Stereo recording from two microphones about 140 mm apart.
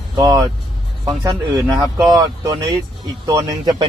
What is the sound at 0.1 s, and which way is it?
Speech, 25° right (ahead or behind).